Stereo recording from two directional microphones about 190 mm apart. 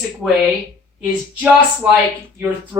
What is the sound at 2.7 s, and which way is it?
Female singing, 15° right (ahead or behind).